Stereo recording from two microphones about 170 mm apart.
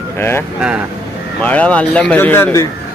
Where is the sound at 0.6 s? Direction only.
5° right (ahead or behind).